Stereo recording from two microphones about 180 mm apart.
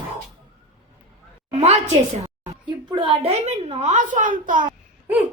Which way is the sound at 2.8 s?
25° right (ahead or behind).